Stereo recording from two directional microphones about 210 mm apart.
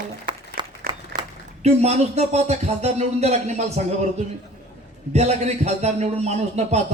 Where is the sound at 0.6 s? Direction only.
20° right (ahead or behind).